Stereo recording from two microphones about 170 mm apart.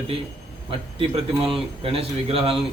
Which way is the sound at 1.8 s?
35° right (ahead or behind).